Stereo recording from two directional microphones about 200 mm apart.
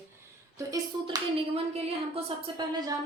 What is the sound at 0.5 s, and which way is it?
Speech, 20° right (ahead or behind).